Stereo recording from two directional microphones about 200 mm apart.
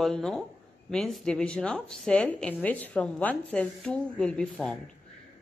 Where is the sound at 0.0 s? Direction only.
Centre (ahead or behind).